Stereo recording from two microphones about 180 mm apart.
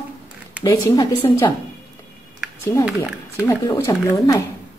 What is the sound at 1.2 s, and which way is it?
Speech, 25° left (ahead or behind).